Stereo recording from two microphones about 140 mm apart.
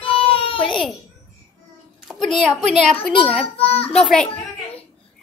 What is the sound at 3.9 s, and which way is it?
Speech, 5° left (ahead or behind).